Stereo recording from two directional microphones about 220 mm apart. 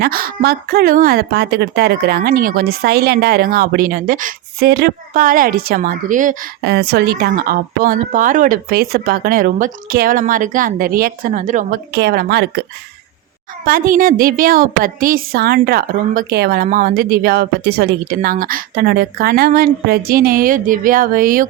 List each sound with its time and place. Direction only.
0.0 s a woman's voice: 40° right (ahead or behind)
6.7 s a woman's voice: 50° right (ahead or behind)
11.9 s a woman's voice: 50° right (ahead or behind)
13.7 s a woman's voice: 40° right (ahead or behind)